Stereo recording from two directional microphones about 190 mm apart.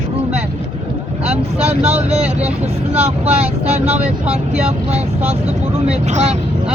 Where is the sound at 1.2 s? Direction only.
35° right (ahead or behind).